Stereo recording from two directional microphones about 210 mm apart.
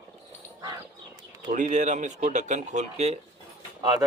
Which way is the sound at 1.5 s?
35° right (ahead or behind).